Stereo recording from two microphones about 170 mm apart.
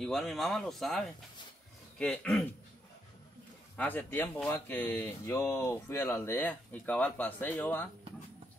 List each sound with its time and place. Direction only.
0.0 s speech: centre (ahead or behind)
3.7 s speech: 10° left (ahead or behind)